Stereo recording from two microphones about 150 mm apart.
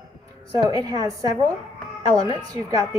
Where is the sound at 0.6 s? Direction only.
25° right (ahead or behind).